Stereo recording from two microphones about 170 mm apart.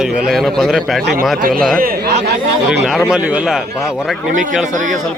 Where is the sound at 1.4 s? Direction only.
55° right (ahead or behind).